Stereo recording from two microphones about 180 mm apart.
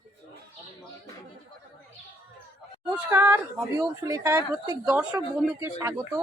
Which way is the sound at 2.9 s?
15° right (ahead or behind).